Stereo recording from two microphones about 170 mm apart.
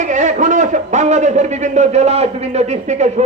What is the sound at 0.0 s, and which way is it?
A man's voice, 45° right (ahead or behind).